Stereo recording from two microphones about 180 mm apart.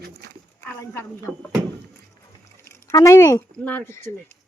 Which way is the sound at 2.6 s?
15° left (ahead or behind).